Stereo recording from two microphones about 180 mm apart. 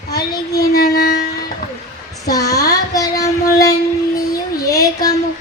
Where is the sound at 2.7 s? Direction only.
20° left (ahead or behind).